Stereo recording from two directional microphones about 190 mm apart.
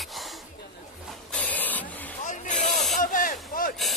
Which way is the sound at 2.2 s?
40° left (ahead or behind).